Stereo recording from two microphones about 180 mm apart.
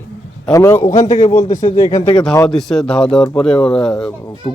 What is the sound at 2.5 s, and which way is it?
Speech, 5° left (ahead or behind).